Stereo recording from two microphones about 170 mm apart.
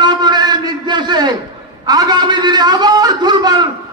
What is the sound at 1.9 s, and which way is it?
A man's voice, 25° right (ahead or behind).